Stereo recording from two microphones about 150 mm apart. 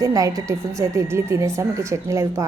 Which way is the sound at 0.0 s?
20° right (ahead or behind).